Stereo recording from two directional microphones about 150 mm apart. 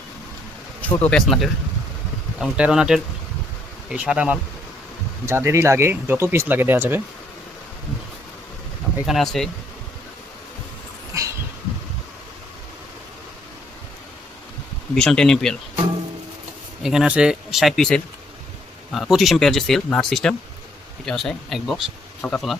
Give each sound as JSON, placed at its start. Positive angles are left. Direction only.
{"t": 0.8, "sound": "speech", "side_deg": 10}
{"t": 9.0, "sound": "speech", "side_deg": 0}
{"t": 11.1, "sound": "a sound", "side_deg": -20}
{"t": 14.9, "sound": "speech", "side_deg": 5}
{"t": 16.8, "sound": "speech", "side_deg": -5}
{"t": 19.1, "sound": "speech", "side_deg": 0}